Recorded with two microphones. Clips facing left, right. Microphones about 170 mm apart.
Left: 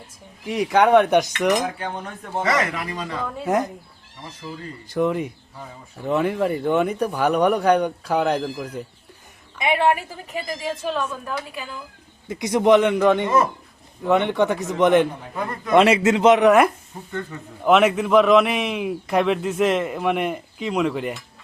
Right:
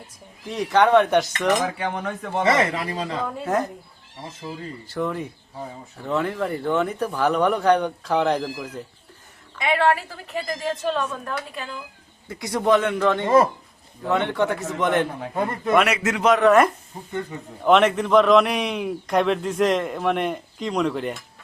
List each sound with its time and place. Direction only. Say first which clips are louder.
0.4 s speech: left 1 dB; 10° left (ahead or behind)
2.4 s speech: right 2 dB; 30° right (ahead or behind)
3.2 s a man's voice: left 1 dB; centre (ahead or behind)
4.2 s speech: right 1 dB; 25° right (ahead or behind)
4.9 s speech: left 5 dB; 15° left (ahead or behind)
10.4 s a man's voice: right 2 dB; 5° left (ahead or behind)
12.3 s a man's voice: left 4 dB; 20° left (ahead or behind)
13.2 s speech: right 3 dB; 30° right (ahead or behind)
14.1 s a man's voice: left 3 dB; 15° left (ahead or behind)
16.5 s a man's voice: left 1 dB; 10° left (ahead or behind)